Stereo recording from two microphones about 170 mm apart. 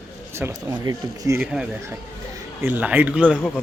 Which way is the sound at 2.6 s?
10° right (ahead or behind).